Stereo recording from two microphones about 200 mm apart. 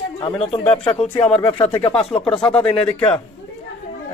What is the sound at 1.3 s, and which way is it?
Speech, 10° left (ahead or behind).